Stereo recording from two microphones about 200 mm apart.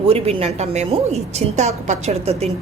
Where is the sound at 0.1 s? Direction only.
30° right (ahead or behind).